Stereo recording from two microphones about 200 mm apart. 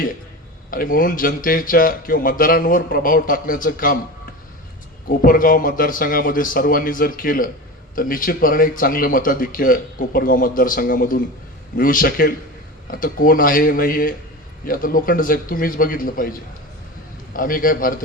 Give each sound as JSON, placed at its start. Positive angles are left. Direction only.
{"t": 0.7, "sound": "speech", "side_deg": 45}
{"t": 5.0, "sound": "speech", "side_deg": 45}